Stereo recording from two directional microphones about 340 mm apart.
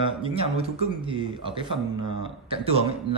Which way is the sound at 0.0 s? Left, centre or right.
Centre.